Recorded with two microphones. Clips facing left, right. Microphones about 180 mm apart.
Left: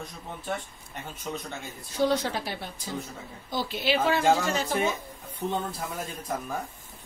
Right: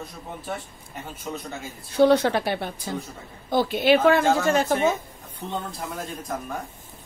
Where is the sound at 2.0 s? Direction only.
65° right (ahead or behind).